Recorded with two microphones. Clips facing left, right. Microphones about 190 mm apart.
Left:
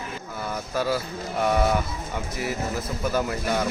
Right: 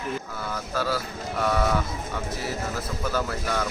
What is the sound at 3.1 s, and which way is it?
Speech, 15° left (ahead or behind).